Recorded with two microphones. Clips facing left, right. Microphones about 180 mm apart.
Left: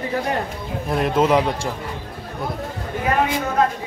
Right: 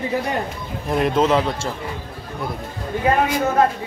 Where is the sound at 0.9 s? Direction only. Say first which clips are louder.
Right 1 dB; centre (ahead or behind).